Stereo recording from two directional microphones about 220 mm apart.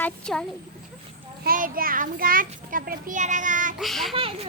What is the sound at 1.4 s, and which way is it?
A child's voice, 40° right (ahead or behind).